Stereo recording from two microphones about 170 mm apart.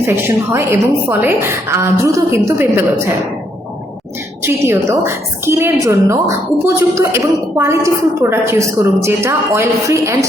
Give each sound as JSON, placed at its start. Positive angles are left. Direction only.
{"t": 0.0, "sound": "a woman's voice", "side_deg": -15}
{"t": 4.4, "sound": "a woman's voice", "side_deg": -15}